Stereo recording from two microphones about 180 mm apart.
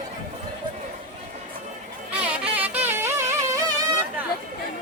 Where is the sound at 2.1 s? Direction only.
5° right (ahead or behind).